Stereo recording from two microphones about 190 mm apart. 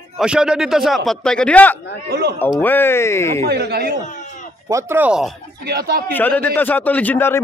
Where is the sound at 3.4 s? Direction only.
55° right (ahead or behind).